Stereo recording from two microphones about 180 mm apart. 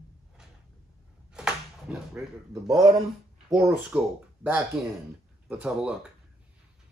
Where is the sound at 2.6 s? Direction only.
25° right (ahead or behind).